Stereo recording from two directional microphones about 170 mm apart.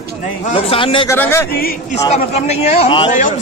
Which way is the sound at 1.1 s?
15° left (ahead or behind).